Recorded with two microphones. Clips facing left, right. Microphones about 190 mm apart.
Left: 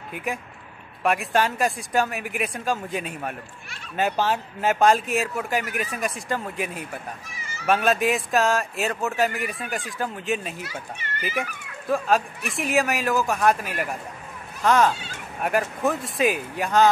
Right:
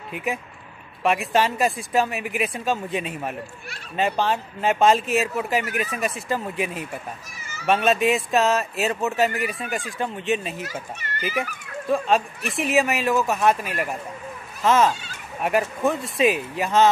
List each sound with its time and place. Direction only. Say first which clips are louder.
0.1 s speech: right 2 dB; centre (ahead or behind)
12.4 s speech: right 2 dB; centre (ahead or behind)